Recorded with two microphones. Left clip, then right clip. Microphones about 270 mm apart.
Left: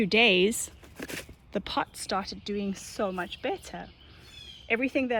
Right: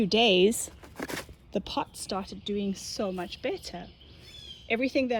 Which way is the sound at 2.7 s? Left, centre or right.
Left.